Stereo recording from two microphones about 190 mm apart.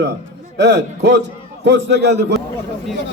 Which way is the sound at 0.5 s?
65° right (ahead or behind).